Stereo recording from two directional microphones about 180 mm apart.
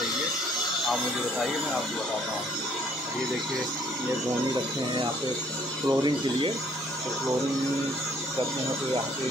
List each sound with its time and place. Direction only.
5.9 s speech: 25° right (ahead or behind)